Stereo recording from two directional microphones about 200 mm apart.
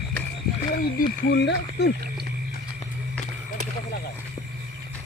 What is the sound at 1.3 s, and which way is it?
Speech, 60° left (ahead or behind).